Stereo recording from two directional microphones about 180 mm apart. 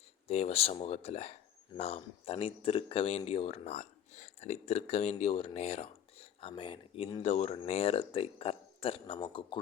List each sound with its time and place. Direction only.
0.3 s speech: 35° left (ahead or behind)